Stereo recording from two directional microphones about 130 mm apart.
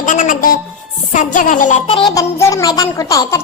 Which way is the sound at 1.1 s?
85° left.